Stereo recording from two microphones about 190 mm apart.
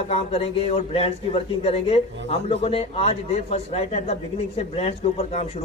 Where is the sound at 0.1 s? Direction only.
30° left (ahead or behind).